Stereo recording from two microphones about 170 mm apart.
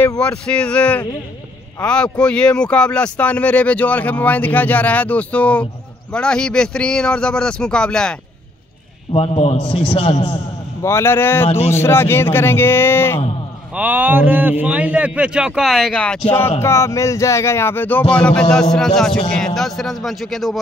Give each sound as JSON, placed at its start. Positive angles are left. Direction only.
{"t": 0.2, "sound": "speech", "side_deg": 5}
{"t": 9.1, "sound": "a man's voice", "side_deg": 35}
{"t": 10.8, "sound": "speech", "side_deg": 15}
{"t": 13.7, "sound": "a man's voice", "side_deg": -10}